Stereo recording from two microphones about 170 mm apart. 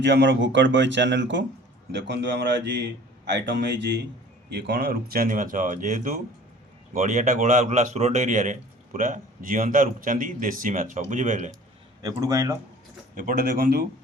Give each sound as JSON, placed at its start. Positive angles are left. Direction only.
{"t": 0.0, "sound": "speech", "side_deg": -90}
{"t": 4.4, "sound": "a man's voice", "side_deg": -80}
{"t": 12.0, "sound": "speech", "side_deg": -20}
{"t": 13.1, "sound": "speech", "side_deg": -55}